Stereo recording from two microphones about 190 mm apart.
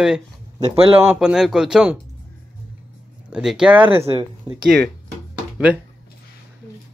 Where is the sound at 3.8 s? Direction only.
30° right (ahead or behind).